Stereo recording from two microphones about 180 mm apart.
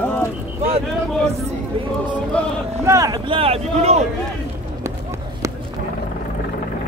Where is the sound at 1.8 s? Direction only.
30° right (ahead or behind).